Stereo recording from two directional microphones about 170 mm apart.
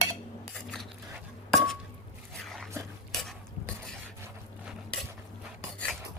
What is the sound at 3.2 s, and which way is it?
Stir, 5° left (ahead or behind).